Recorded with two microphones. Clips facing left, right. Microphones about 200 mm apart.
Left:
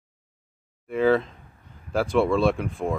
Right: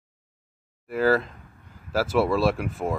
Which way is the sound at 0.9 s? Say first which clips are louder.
Left 1 dB; 5° right (ahead or behind).